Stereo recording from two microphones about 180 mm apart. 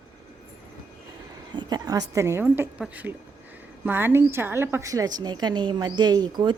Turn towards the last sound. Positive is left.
turn(degrees=-25)  # may be behind; listen again after turning